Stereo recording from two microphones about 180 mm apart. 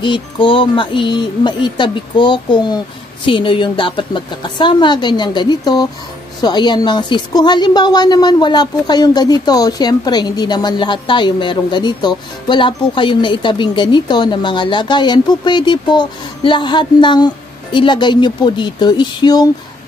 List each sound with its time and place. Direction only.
0.0 s a woman's voice: 25° left (ahead or behind)